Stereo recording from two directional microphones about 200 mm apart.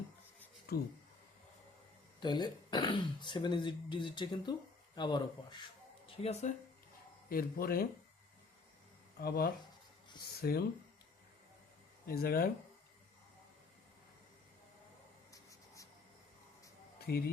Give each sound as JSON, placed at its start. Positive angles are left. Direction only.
{"t": 2.2, "sound": "speech", "side_deg": 20}
{"t": 7.3, "sound": "speech", "side_deg": 45}
{"t": 9.1, "sound": "speech", "side_deg": 50}
{"t": 12.0, "sound": "speech", "side_deg": 50}
{"t": 15.3, "sound": "writing", "side_deg": 15}
{"t": 17.1, "sound": "speech", "side_deg": 50}